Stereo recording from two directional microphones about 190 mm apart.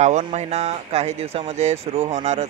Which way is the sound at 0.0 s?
40° right (ahead or behind).